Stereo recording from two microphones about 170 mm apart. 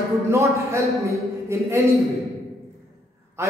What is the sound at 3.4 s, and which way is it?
Speech, 15° right (ahead or behind).